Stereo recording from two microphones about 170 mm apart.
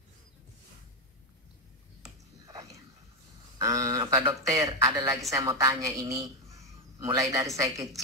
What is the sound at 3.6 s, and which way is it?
A woman's voice, 20° right (ahead or behind).